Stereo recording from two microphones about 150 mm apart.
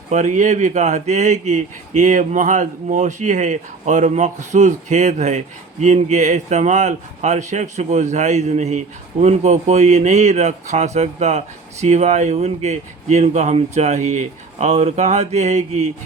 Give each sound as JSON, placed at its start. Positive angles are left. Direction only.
{"t": 0.1, "sound": "speech", "side_deg": -55}